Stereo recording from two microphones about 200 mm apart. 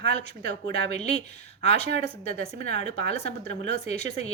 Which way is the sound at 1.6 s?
35° left (ahead or behind).